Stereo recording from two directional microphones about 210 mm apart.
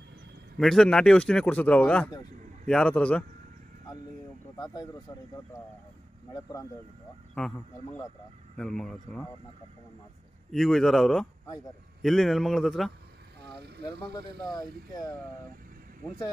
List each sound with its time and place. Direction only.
0.6 s a man's voice: centre (ahead or behind)
4.6 s speech: 20° left (ahead or behind)
7.3 s a man's voice: 5° left (ahead or behind)
10.5 s a man's voice: centre (ahead or behind)
14.5 s speech: 20° left (ahead or behind)
16.0 s speech: 10° left (ahead or behind)